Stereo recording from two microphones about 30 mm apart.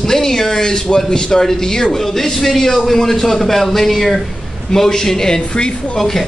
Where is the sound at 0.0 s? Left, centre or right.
Centre.